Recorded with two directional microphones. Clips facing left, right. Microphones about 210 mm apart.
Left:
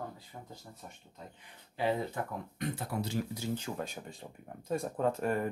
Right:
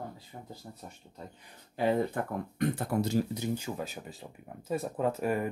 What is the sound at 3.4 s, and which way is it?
Speech, 10° right (ahead or behind).